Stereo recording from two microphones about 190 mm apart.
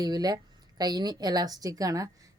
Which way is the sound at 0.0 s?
20° right (ahead or behind).